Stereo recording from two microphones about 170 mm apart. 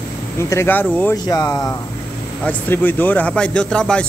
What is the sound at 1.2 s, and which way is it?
A man's voice, 20° left (ahead or behind).